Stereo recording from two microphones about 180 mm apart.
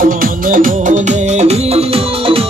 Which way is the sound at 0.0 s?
50° right (ahead or behind).